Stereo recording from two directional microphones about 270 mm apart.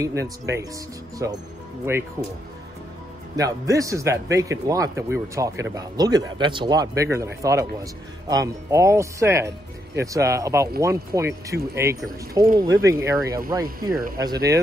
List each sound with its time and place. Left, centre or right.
0.0 s speech: centre
3.3 s speech: centre